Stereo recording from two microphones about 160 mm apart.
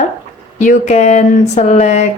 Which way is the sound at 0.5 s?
50° left (ahead or behind).